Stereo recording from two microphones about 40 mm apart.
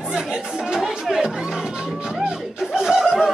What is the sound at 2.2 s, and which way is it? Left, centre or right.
Snicker, centre.